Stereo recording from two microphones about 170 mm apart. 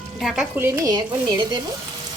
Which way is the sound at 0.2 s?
Centre (ahead or behind).